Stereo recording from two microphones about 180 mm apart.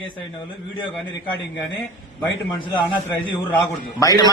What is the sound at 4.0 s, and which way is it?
Speech, 20° left (ahead or behind).